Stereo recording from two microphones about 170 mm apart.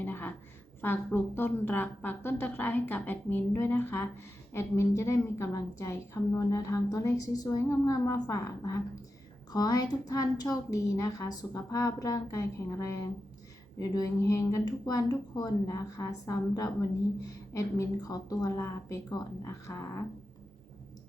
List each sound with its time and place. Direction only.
0.0 s a sound: 10° left (ahead or behind)
0.8 s a woman's voice: 15° left (ahead or behind)
13.7 s a woman's voice: 20° left (ahead or behind)